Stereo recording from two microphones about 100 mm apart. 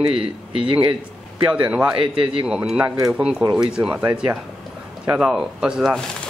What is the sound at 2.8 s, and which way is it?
Speech, 35° right (ahead or behind).